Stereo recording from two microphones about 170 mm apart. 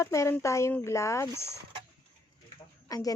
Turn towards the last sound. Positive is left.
turn(degrees=20)  # may be behind; listen again after turning